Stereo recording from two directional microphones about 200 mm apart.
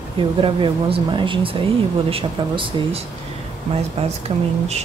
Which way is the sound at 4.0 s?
30° right (ahead or behind).